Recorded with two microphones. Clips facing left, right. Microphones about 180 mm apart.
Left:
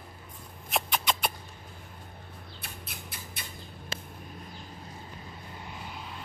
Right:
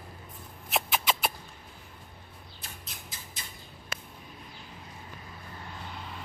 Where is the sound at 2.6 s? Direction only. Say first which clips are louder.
Left 2 dB; 60° left (ahead or behind).